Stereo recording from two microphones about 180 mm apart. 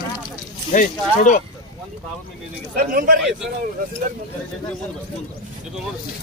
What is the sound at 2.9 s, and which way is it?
Speech, 55° right (ahead or behind).